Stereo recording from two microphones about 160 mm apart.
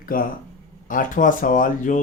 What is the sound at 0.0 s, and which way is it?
Speech, 65° left (ahead or behind).